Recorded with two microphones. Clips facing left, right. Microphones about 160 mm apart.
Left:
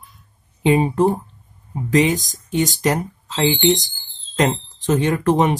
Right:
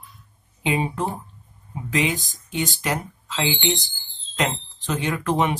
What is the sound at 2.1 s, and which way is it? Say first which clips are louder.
Speech: left 6 dB; 20° left (ahead or behind).